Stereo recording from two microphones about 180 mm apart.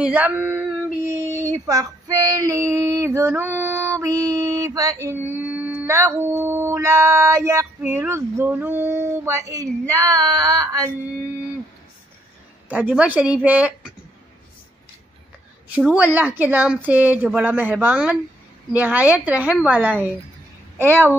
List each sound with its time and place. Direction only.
0.0 s female singing: 10° right (ahead or behind)
12.6 s female singing: 5° right (ahead or behind)
15.7 s female singing: 5° right (ahead or behind)